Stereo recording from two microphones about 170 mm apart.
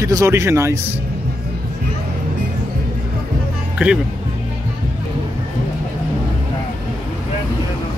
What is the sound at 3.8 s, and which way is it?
Speech, 10° right (ahead or behind).